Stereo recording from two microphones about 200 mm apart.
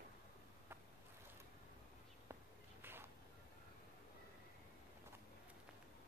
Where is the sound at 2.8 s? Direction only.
10° right (ahead or behind).